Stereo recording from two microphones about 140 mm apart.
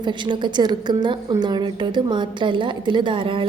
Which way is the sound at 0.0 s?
35° right (ahead or behind).